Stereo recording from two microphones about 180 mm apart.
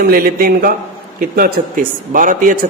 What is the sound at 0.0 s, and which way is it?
A man's voice, 55° right (ahead or behind).